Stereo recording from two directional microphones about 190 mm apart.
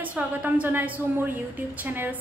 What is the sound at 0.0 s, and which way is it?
A woman's voice, 10° right (ahead or behind).